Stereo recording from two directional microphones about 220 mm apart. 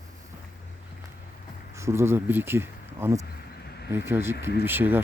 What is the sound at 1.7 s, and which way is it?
Speech, 10° right (ahead or behind).